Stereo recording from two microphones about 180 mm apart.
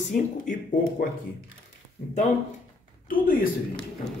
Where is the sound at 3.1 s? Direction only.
50° left (ahead or behind).